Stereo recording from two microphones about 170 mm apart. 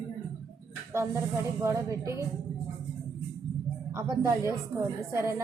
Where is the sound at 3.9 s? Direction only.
15° right (ahead or behind).